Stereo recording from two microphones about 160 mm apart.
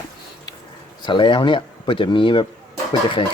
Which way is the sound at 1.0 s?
30° left (ahead or behind).